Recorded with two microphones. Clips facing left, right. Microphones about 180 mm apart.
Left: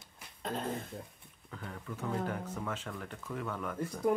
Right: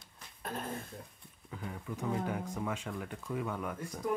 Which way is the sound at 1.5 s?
10° right (ahead or behind).